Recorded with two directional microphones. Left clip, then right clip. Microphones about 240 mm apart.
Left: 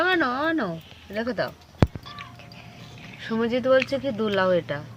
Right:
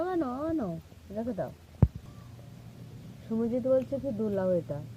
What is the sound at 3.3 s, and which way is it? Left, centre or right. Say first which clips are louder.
Speech: left 7 dB; left.